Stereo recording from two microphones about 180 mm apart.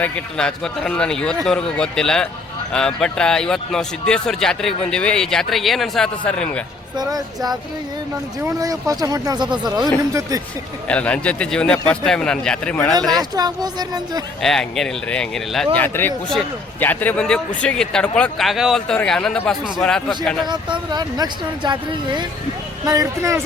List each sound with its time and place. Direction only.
0.0 s speech: 5° left (ahead or behind)
6.9 s speech: 20° right (ahead or behind)
10.8 s a man's voice: 5° left (ahead or behind)
13.1 s speech: 20° right (ahead or behind)
14.4 s speech: centre (ahead or behind)
20.5 s speech: 25° right (ahead or behind)